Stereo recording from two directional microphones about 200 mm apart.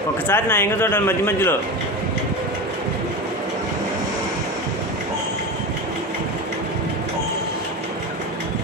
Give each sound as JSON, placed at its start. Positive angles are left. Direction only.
{"t": 0.3, "sound": "speech", "side_deg": 10}